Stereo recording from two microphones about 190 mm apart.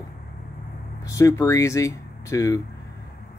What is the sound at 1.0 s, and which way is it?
Speech, 15° left (ahead or behind).